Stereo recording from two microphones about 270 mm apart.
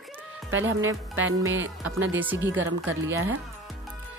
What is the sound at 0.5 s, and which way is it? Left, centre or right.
Speech, right.